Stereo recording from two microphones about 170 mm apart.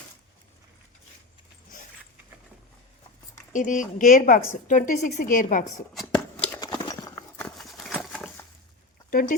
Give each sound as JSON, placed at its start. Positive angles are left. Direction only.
{"t": 3.5, "sound": "a woman's voice", "side_deg": 50}
{"t": 5.9, "sound": "a sound", "side_deg": 5}
{"t": 6.6, "sound": "clip-clop", "side_deg": 25}
{"t": 7.4, "sound": "horse", "side_deg": 0}